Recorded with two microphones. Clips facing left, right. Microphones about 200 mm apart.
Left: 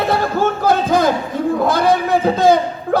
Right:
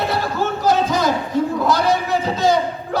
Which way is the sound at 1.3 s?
55° left (ahead or behind).